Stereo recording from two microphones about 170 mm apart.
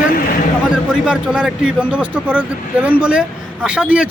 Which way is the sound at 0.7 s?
5° right (ahead or behind).